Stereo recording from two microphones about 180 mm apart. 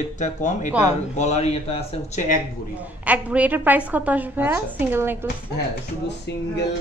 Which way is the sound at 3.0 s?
10° right (ahead or behind).